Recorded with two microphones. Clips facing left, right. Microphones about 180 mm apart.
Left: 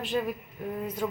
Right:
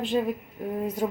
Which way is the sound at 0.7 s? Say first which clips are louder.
Right 4 dB; 35° right (ahead or behind).